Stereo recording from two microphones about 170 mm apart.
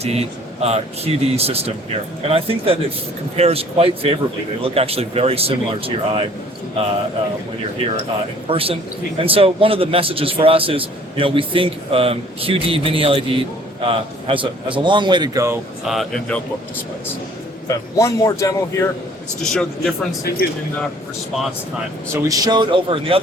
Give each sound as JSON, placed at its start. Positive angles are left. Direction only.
{"t": 0.0, "sound": "a man's voice", "side_deg": -35}
{"t": 8.4, "sound": "a man's voice", "side_deg": -35}
{"t": 15.9, "sound": "speech", "side_deg": 0}
{"t": 17.7, "sound": "a man's voice", "side_deg": 20}
{"t": 19.4, "sound": "speech", "side_deg": 0}
{"t": 22.1, "sound": "a man's voice", "side_deg": -20}